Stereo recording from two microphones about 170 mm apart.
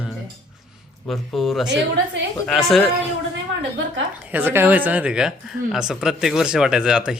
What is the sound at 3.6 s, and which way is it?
Speech, 90° right.